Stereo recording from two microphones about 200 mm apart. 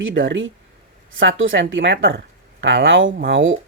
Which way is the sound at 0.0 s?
70° right (ahead or behind).